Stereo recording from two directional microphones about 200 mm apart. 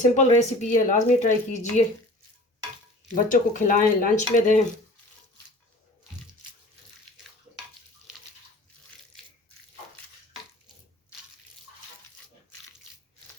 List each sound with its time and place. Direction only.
0.0 s a woman's voice: 35° left (ahead or behind)
3.2 s a woman's voice: 40° left (ahead or behind)